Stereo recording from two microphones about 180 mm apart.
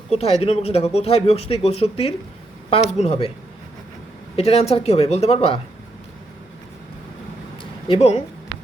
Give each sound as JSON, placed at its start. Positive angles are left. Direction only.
{"t": 0.1, "sound": "speech", "side_deg": 35}
{"t": 4.4, "sound": "speech", "side_deg": 35}
{"t": 7.6, "sound": "a sound", "side_deg": 30}